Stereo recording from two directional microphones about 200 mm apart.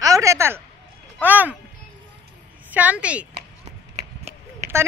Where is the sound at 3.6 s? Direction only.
35° right (ahead or behind).